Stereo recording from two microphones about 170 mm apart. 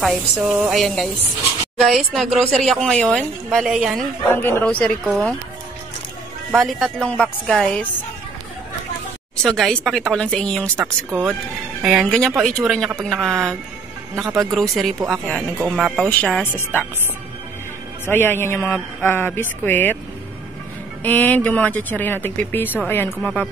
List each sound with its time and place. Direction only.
0.0 s speech: centre (ahead or behind)
4.3 s speech: 15° left (ahead or behind)
6.5 s speech: centre (ahead or behind)
9.4 s speech: 5° left (ahead or behind)
14.2 s speech: 20° right (ahead or behind)
15.0 s speech: 5° left (ahead or behind)
18.0 s speech: 15° left (ahead or behind)
21.0 s speech: 10° left (ahead or behind)